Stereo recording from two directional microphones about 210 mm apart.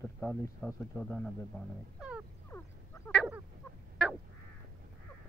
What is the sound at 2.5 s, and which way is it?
Frog, 10° left (ahead or behind).